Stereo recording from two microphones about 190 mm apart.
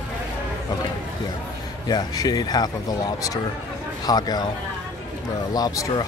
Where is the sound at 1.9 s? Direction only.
20° left (ahead or behind).